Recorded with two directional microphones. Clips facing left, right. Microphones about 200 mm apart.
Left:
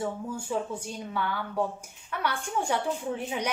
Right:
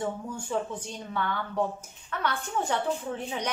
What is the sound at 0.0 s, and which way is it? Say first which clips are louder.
A woman's voice: even; 10° left (ahead or behind).